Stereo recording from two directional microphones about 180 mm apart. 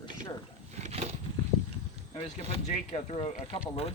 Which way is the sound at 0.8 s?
35° right (ahead or behind).